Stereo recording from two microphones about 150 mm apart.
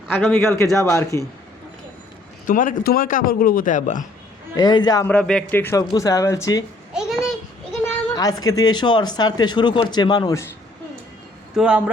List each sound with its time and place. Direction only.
0.3 s a man's voice: 15° left (ahead or behind)
2.5 s speech: 65° left (ahead or behind)
4.5 s speech: 30° left (ahead or behind)
5.0 s a man's voice: 5° left (ahead or behind); by 6.7 s 20° left (ahead or behind)
6.9 s a sound: 5° right (ahead or behind)
8.1 s speech: 25° left (ahead or behind)
11.5 s speech: 5° right (ahead or behind)